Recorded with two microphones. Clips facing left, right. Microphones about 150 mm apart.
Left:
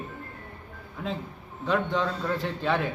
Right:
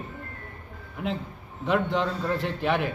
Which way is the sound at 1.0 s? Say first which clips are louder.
Right 2 dB; 15° right (ahead or behind).